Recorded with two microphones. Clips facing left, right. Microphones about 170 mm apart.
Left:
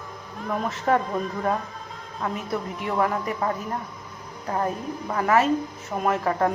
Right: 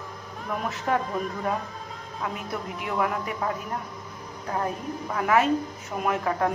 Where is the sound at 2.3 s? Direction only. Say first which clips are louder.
Left 4 dB; centre (ahead or behind).